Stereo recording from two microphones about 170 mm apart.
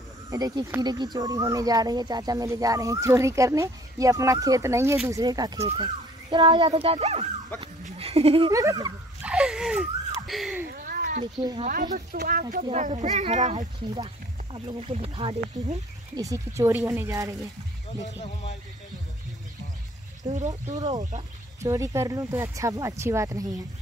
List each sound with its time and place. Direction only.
0.3 s speech: 20° right (ahead or behind)
6.7 s speech: 35° right (ahead or behind)
8.5 s speech: 20° right (ahead or behind)
9.2 s a sound: 5° right (ahead or behind)
10.7 s a sound: 55° right (ahead or behind)
11.6 s speech: 50° right (ahead or behind)
13.9 s speech: 30° right (ahead or behind)
16.2 s speech: 20° right (ahead or behind)
18.0 s speech: 40° left (ahead or behind)
20.2 s speech: 45° right (ahead or behind)
21.6 s speech: 15° right (ahead or behind)